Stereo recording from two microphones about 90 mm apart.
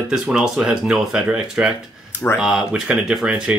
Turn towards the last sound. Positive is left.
turn(degrees=-10)  # may be behind; listen again after turning